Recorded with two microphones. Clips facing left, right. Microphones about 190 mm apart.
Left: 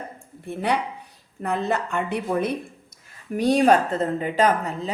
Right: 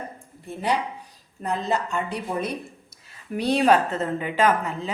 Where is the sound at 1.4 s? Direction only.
60° left (ahead or behind).